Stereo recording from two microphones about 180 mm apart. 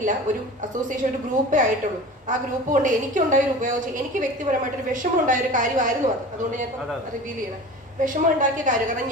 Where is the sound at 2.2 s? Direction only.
45° right (ahead or behind).